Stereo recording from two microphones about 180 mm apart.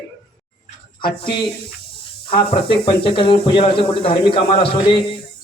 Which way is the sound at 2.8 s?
30° left (ahead or behind).